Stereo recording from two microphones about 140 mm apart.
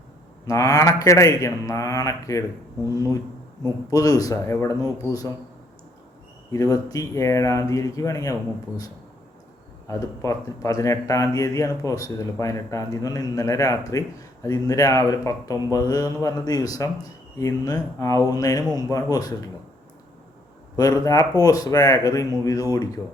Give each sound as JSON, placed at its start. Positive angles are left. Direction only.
{"t": 0.4, "sound": "speech", "side_deg": 25}
{"t": 6.5, "sound": "speech", "side_deg": 25}
{"t": 9.8, "sound": "speech", "side_deg": 20}
{"t": 20.7, "sound": "speech", "side_deg": 25}